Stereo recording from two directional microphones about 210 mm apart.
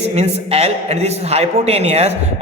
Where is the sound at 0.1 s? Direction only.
30° right (ahead or behind).